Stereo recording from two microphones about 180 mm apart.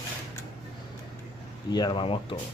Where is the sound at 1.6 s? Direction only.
25° left (ahead or behind).